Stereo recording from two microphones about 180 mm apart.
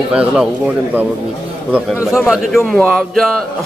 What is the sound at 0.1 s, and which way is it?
Speech, 5° right (ahead or behind).